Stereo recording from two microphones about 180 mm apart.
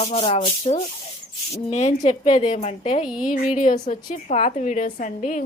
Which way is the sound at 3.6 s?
45° left (ahead or behind).